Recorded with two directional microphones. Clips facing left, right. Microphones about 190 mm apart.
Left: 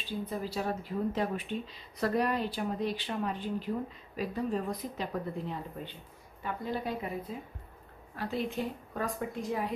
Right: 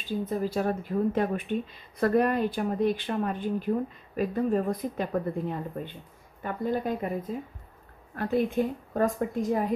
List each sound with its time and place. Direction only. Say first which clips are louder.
0.0 s speech: right 6 dB; 45° right (ahead or behind)